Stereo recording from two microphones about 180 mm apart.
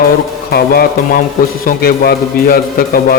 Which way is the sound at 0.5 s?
55° left (ahead or behind).